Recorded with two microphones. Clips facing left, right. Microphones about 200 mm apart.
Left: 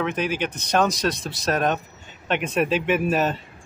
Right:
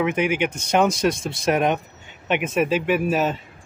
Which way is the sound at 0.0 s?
15° right (ahead or behind).